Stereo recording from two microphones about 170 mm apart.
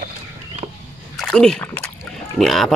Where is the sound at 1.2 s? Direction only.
5° left (ahead or behind).